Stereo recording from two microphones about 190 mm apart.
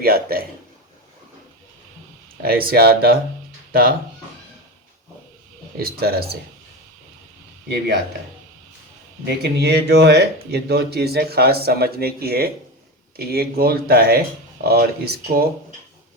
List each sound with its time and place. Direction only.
0.0 s speech: 50° right (ahead or behind)
2.4 s speech: 50° right (ahead or behind)
5.8 s speech: 55° right (ahead or behind)
9.2 s speech: 60° right (ahead or behind)